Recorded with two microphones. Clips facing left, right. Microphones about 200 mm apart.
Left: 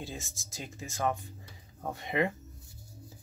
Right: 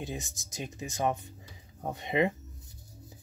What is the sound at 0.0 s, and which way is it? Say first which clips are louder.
Speech: right 4 dB; 20° right (ahead or behind).